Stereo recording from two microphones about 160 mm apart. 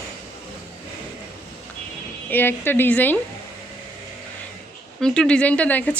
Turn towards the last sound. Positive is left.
turn(degrees=10)  # may be behind; listen again after turning